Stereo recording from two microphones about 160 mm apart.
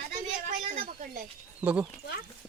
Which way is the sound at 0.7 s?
65° right (ahead or behind).